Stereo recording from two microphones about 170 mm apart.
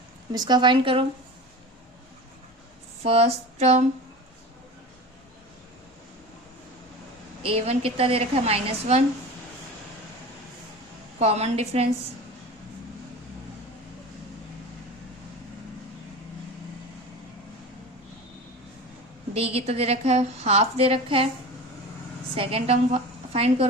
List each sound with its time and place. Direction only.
0.3 s a woman's voice: 25° right (ahead or behind)
3.0 s a woman's voice: 35° right (ahead or behind)
7.5 s a woman's voice: 35° right (ahead or behind)
11.2 s a woman's voice: 40° right (ahead or behind)
19.3 s a woman's voice: 35° right (ahead or behind)
22.4 s a woman's voice: 35° right (ahead or behind)